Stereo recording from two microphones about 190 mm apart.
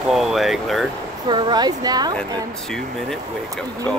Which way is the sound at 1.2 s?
25° right (ahead or behind).